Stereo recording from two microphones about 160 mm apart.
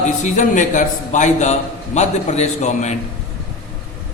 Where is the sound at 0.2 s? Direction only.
50° left (ahead or behind).